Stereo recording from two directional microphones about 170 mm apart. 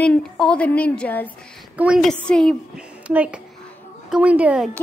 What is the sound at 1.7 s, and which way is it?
A woman's voice, 5° right (ahead or behind).